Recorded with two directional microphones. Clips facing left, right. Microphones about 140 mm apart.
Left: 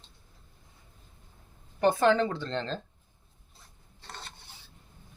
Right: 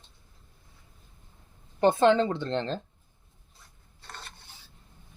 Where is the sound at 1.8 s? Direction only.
25° right (ahead or behind).